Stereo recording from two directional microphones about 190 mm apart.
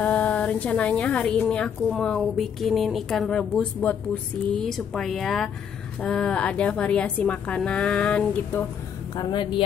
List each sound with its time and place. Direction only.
0.0 s a woman's voice: 10° left (ahead or behind)
9.1 s speech: 25° left (ahead or behind)